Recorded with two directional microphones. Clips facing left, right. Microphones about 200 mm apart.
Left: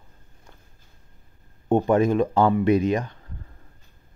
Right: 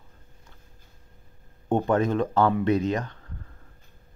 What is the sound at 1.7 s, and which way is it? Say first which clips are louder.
Speech: left 4 dB; 10° left (ahead or behind).